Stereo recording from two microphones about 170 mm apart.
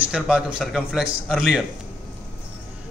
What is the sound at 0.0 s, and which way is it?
A man's voice, 5° right (ahead or behind).